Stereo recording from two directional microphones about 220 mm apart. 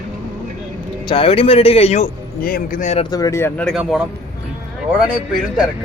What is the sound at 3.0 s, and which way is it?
Speech, 15° left (ahead or behind).